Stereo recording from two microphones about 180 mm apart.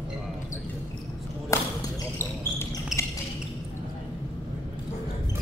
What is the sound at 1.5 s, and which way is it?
Basketball bounce, 15° left (ahead or behind).